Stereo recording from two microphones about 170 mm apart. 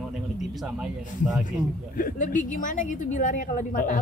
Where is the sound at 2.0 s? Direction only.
50° left (ahead or behind).